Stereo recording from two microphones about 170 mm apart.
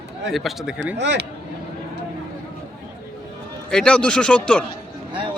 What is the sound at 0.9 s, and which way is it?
Speech, 90° right.